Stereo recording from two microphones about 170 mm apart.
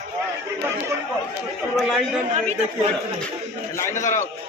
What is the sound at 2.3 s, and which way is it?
Speech, 45° right (ahead or behind).